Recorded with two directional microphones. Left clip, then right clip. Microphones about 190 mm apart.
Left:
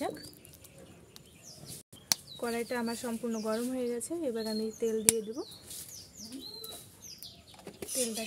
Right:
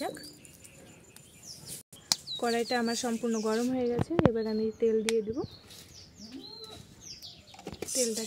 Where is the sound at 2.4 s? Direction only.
45° right (ahead or behind); by 5.4 s 25° right (ahead or behind).